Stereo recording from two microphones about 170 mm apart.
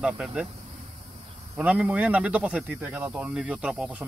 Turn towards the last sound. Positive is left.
turn(degrees=-5)  # may be behind; listen again after turning